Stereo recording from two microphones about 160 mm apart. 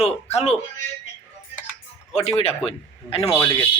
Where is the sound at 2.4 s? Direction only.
40° left (ahead or behind).